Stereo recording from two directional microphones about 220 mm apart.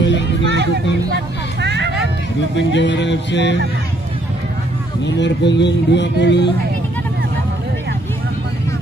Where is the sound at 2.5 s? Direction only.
55° left (ahead or behind).